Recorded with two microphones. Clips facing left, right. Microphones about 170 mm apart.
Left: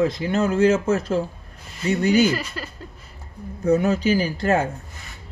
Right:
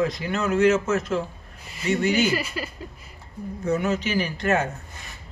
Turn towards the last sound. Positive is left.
turn(degrees=30)  # may be behind; listen again after turning